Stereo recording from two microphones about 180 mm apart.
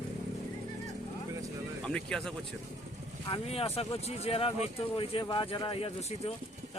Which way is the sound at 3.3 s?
35° left (ahead or behind).